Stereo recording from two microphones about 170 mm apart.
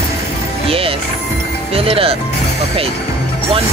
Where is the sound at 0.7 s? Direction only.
35° right (ahead or behind).